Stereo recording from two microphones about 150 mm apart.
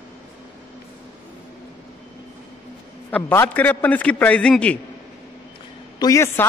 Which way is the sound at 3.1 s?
10° left (ahead or behind).